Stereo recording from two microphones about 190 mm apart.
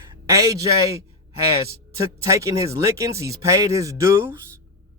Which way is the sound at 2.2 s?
15° right (ahead or behind).